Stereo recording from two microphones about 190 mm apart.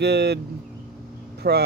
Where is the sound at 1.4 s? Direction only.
55° right (ahead or behind).